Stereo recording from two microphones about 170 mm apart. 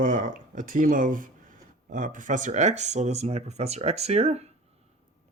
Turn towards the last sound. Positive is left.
turn(degrees=-40)  # may be behind; listen again after turning